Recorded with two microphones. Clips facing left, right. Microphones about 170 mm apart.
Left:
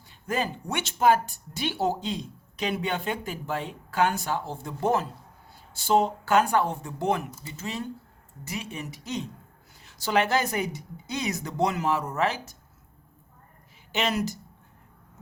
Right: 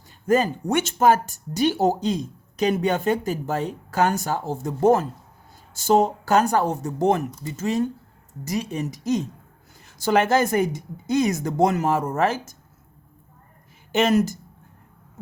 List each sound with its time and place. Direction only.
0.3 s speech: 45° right (ahead or behind)
13.9 s speech: 45° right (ahead or behind)